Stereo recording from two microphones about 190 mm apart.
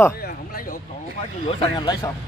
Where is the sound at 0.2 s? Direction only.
55° left (ahead or behind).